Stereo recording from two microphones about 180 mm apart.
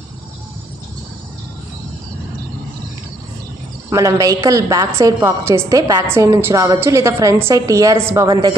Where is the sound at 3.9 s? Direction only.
20° right (ahead or behind).